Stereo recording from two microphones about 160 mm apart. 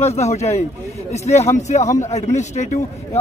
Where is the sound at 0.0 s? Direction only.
45° left (ahead or behind).